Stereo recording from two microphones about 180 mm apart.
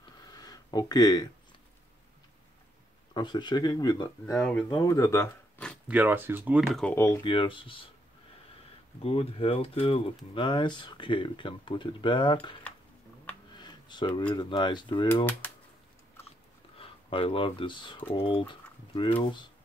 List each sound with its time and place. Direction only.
0.2 s a sound: 20° left (ahead or behind)
3.2 s speech: 25° left (ahead or behind)
4.4 s speech: 5° left (ahead or behind)
4.6 s speech: 20° left (ahead or behind)
5.9 s speech: 10° right (ahead or behind)
7.2 s speech: 30° left (ahead or behind)
9.0 s speech: 30° left (ahead or behind)
13.6 s a sound: 25° left (ahead or behind)
14.3 s speech: 25° left (ahead or behind)
16.7 s speech: 30° left (ahead or behind)